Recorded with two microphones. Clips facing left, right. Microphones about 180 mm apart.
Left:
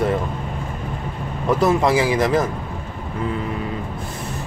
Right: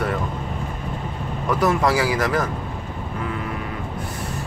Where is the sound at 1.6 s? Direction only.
20° left (ahead or behind).